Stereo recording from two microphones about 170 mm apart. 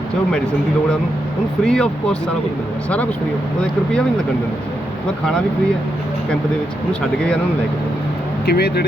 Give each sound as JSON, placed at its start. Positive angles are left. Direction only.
{"t": 1.6, "sound": "speech", "side_deg": 5}
{"t": 8.4, "sound": "speech", "side_deg": 70}